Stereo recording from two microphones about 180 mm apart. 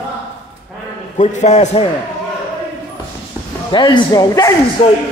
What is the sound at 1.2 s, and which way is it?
Speech, 40° left (ahead or behind).